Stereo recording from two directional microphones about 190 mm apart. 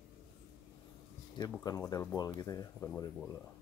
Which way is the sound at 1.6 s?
20° left (ahead or behind).